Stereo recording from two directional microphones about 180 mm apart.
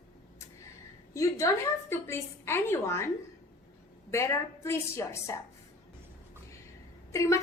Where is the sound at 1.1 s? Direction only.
15° left (ahead or behind).